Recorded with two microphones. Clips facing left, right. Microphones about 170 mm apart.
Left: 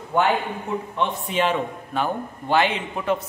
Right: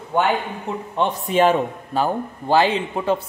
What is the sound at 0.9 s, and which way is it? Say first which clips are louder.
A man's voice: right 6 dB; 40° right (ahead or behind).